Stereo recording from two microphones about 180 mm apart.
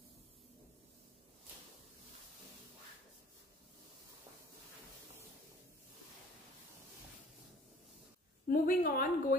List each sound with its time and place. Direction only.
8.5 s a woman's voice: 50° left (ahead or behind)